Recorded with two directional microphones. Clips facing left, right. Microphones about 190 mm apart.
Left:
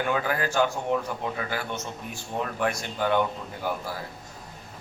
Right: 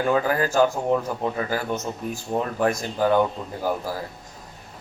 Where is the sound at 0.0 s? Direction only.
35° right (ahead or behind).